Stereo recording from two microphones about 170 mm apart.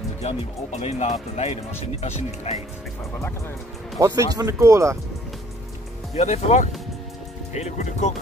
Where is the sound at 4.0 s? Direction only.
20° right (ahead or behind).